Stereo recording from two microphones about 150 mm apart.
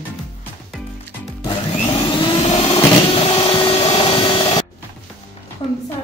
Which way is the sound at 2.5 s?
45° left (ahead or behind).